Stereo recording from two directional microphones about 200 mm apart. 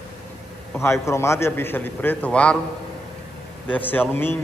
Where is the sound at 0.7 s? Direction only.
15° left (ahead or behind).